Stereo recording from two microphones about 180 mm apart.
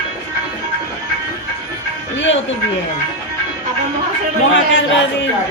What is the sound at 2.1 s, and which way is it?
Music, 90° left.